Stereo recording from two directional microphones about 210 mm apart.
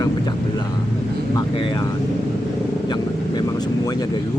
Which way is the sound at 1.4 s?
25° left (ahead or behind).